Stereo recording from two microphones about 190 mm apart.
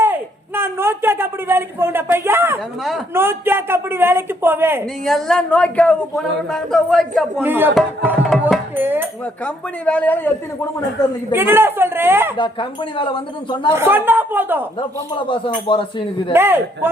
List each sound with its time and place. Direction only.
0.0 s a sound: 10° right (ahead or behind)
3.2 s a woman's voice: 10° right (ahead or behind)
5.0 s a woman's voice: centre (ahead or behind)
7.4 s a woman's voice: 10° right (ahead or behind)
7.8 s a woman's voice: 5° left (ahead or behind)
8.7 s a woman's voice: 10° right (ahead or behind)
9.4 s speech: 10° left (ahead or behind)
11.3 s a woman's voice: 10° right (ahead or behind)
12.4 s speech: 25° left (ahead or behind)
13.7 s a woman's voice: 10° right (ahead or behind)
14.8 s speech: 25° left (ahead or behind)
16.3 s a woman's voice: 10° right (ahead or behind)